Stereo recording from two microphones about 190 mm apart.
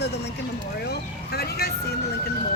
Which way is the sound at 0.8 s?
55° left (ahead or behind).